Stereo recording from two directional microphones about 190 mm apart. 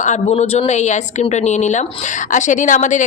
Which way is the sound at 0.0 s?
40° left (ahead or behind).